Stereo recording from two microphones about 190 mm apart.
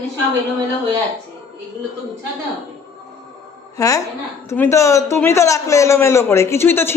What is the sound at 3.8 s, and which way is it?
A man's voice, 15° left (ahead or behind).